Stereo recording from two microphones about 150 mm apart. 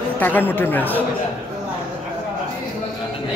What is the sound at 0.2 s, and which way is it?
Speech, 15° left (ahead or behind).